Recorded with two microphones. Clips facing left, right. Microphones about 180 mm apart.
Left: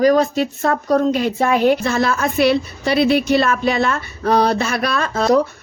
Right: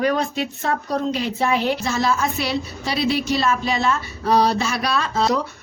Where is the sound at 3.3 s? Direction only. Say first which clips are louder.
Left 5 dB; 60° left (ahead or behind).